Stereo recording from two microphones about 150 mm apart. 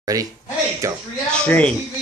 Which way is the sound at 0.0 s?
25° right (ahead or behind).